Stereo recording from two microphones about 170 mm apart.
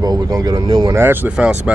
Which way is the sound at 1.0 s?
10° right (ahead or behind).